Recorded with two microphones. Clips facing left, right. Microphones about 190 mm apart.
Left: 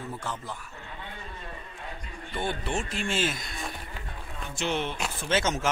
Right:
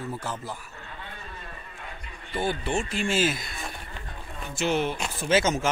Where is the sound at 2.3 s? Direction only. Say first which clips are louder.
Right 3 dB; 5° right (ahead or behind).